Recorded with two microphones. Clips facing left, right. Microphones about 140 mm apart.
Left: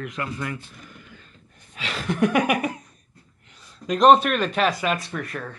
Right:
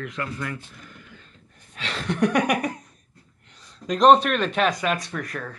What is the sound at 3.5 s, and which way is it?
Speech, 5° left (ahead or behind).